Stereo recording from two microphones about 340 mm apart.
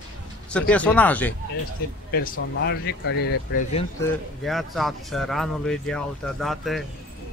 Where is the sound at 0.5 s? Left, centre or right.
Centre.